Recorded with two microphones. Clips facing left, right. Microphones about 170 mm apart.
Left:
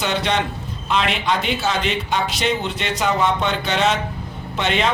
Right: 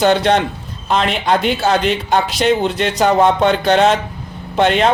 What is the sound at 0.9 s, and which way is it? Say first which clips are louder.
A man's voice: right 5 dB; 40° right (ahead or behind).